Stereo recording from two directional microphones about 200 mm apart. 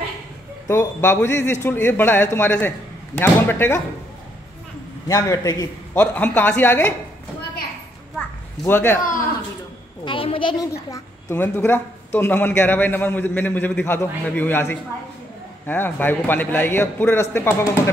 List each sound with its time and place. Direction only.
0.7 s a woman's voice: 10° left (ahead or behind)
5.0 s a woman's voice: 15° left (ahead or behind)
8.6 s a woman's voice: 10° left (ahead or behind)
10.0 s a child's voice: 25° left (ahead or behind)
10.9 s a woman's voice: 10° left (ahead or behind)